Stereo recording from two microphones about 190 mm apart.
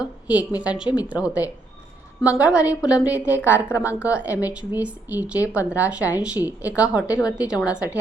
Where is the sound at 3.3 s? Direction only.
10° right (ahead or behind).